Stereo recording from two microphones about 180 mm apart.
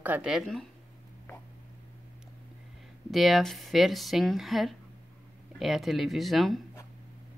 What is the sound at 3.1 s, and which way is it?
Speech, centre (ahead or behind).